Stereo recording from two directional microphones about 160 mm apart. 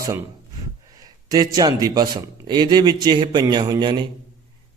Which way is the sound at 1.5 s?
25° right (ahead or behind).